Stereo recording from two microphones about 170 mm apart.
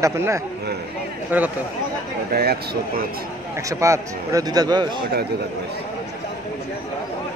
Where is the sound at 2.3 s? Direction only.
65° right (ahead or behind).